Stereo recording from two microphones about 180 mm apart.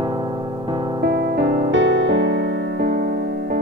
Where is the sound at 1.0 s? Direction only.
65° right (ahead or behind); by 2.3 s 90° right.